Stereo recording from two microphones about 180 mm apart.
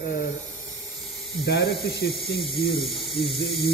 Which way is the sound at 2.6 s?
Centre (ahead or behind).